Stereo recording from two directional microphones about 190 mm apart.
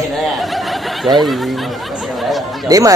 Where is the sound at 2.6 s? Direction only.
20° right (ahead or behind).